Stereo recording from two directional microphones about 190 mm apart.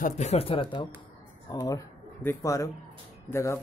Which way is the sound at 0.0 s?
35° left (ahead or behind).